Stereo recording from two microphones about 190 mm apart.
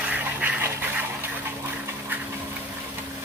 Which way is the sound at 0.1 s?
10° right (ahead or behind).